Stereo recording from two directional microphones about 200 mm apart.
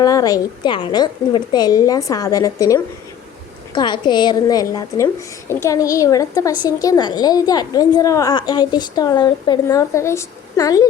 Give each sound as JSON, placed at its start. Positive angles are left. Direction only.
{"t": 0.0, "sound": "a woman's voice", "side_deg": 20}